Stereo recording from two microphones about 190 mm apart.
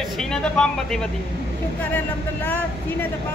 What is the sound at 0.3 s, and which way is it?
Speech, 5° left (ahead or behind).